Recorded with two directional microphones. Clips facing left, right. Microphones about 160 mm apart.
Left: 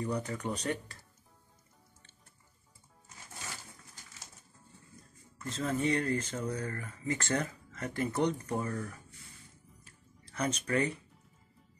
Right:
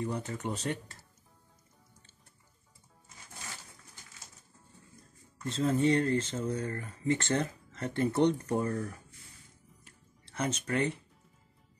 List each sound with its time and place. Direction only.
0.0 s speech: 25° right (ahead or behind)
5.4 s speech: 30° right (ahead or behind)
10.2 s speech: 30° right (ahead or behind)